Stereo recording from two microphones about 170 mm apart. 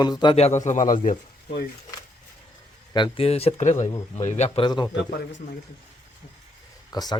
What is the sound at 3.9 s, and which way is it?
Speech, 25° left (ahead or behind).